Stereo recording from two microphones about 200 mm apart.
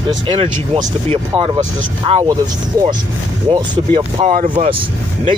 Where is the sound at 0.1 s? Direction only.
25° right (ahead or behind).